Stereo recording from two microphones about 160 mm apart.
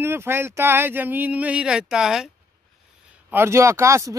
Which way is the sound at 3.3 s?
15° right (ahead or behind).